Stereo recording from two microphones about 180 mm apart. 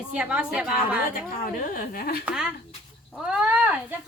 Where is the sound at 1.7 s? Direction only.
55° left (ahead or behind).